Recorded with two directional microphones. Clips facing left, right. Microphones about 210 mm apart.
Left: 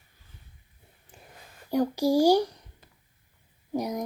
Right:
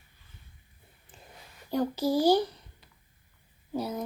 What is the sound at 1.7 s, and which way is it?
Speech, 10° left (ahead or behind).